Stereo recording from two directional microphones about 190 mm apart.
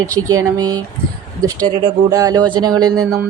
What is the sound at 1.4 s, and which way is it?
Speech, 20° right (ahead or behind).